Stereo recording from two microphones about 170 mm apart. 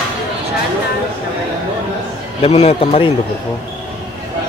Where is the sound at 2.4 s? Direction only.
35° left (ahead or behind).